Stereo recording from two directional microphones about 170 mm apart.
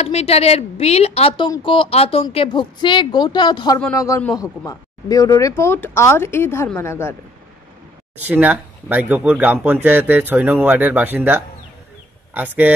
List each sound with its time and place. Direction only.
0.0 s a woman's voice: 40° left (ahead or behind); by 7.2 s 15° left (ahead or behind)
8.2 s speech: 10° right (ahead or behind)